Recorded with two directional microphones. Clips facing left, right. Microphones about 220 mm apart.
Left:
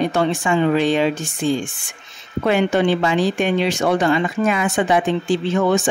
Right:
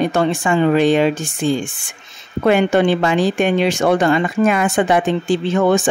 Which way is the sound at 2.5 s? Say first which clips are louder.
Right 3 dB; 55° right (ahead or behind).